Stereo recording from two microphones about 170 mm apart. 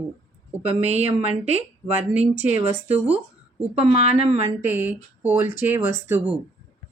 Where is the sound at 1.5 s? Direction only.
10° right (ahead or behind).